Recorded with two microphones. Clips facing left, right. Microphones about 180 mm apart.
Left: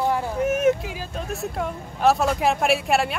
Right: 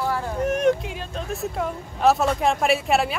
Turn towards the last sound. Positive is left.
turn(degrees=0)  # may be behind; listen again after turning